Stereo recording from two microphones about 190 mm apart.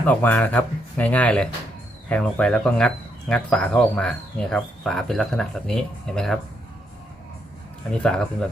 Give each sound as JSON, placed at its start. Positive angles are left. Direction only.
{"t": 0.0, "sound": "speech", "side_deg": 10}
{"t": 7.9, "sound": "speech", "side_deg": 5}